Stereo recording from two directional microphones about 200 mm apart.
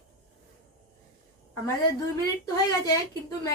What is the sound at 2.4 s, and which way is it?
A woman's voice, 20° left (ahead or behind).